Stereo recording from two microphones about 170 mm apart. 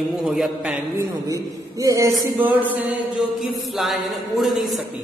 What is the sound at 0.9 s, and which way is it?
A man's voice, 20° right (ahead or behind).